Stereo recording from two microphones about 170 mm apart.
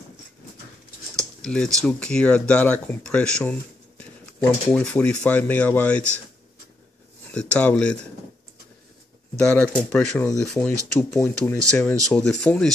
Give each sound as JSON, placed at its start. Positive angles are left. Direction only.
{"t": 1.1, "sound": "speech", "side_deg": 5}
{"t": 7.2, "sound": "speech", "side_deg": 10}
{"t": 9.8, "sound": "speech", "side_deg": 10}
{"t": 11.0, "sound": "speech", "side_deg": 15}
{"t": 11.5, "sound": "speech", "side_deg": 5}